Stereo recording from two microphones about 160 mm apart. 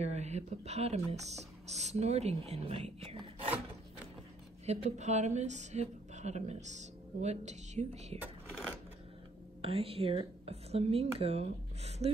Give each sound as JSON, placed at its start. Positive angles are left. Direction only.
{"t": 0.0, "sound": "a woman's voice", "side_deg": -45}
{"t": 4.6, "sound": "a woman's voice", "side_deg": -45}
{"t": 8.2, "sound": "a sound", "side_deg": -10}
{"t": 9.6, "sound": "speech", "side_deg": -40}